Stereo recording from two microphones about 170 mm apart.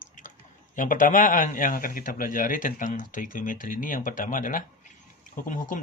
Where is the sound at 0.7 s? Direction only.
50° left (ahead or behind).